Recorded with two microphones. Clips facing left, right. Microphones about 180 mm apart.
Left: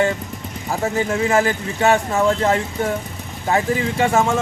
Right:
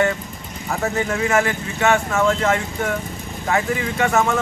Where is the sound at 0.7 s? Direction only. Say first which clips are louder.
Left 2 dB; 30° left (ahead or behind).